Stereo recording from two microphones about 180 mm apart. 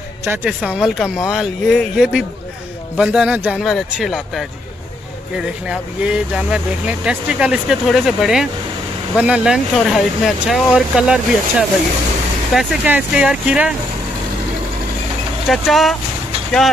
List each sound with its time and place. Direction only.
0.3 s speech: 5° right (ahead or behind)
5.7 s speech: 5° right (ahead or behind)
15.4 s speech: centre (ahead or behind)